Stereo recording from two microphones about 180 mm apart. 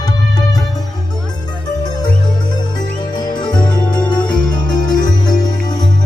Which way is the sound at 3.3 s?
25° left (ahead or behind).